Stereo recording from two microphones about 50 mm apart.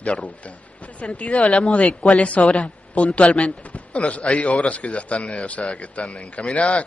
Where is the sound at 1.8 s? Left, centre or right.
Left.